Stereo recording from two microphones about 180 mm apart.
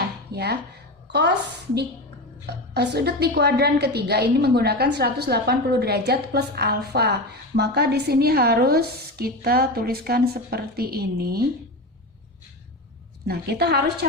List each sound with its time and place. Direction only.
1.1 s a woman's voice: 65° right (ahead or behind)
13.2 s a woman's voice: 65° right (ahead or behind)